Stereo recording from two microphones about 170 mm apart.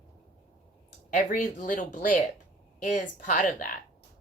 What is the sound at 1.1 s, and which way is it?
Speech, 45° left (ahead or behind).